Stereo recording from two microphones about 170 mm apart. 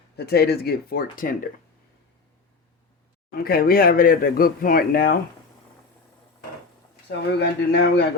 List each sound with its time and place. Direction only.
0.2 s speech: 70° left (ahead or behind); by 1.4 s 55° left (ahead or behind)
3.3 s speech: 60° left (ahead or behind)
7.1 s speech: 75° left (ahead or behind)